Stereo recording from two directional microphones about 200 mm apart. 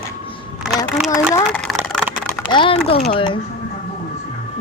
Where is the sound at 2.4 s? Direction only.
25° left (ahead or behind).